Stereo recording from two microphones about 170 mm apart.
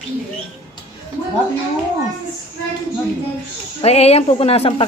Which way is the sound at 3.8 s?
35° left (ahead or behind).